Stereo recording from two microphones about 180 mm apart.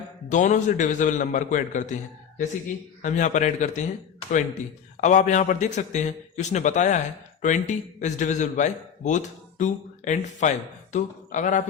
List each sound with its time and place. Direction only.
0.3 s a man's voice: 40° left (ahead or behind)
3.0 s a man's voice: 45° left (ahead or behind)
4.9 s a man's voice: 40° left (ahead or behind)